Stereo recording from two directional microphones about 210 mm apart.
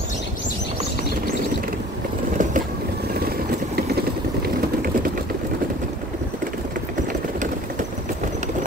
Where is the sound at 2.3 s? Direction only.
35° right (ahead or behind).